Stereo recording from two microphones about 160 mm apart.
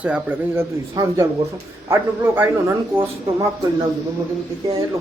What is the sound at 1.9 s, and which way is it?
Speech, 15° right (ahead or behind).